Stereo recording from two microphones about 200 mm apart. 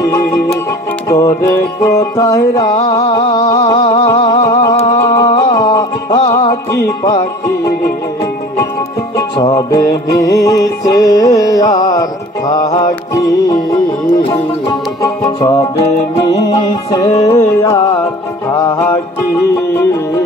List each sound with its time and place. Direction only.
0.0 s music: 15° left (ahead or behind)
3.1 s a sound: 20° left (ahead or behind)
4.9 s music: 20° left (ahead or behind)
7.1 s music: 20° left (ahead or behind)
9.4 s music: 30° left (ahead or behind)
10.0 s music: 15° left (ahead or behind)